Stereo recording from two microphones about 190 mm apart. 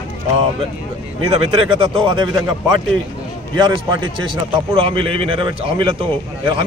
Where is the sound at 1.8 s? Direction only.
25° right (ahead or behind).